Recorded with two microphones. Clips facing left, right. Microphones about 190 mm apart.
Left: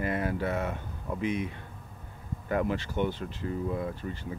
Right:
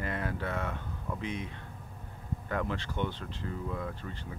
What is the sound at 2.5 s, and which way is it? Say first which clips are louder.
Speech: left 6 dB; 10° left (ahead or behind).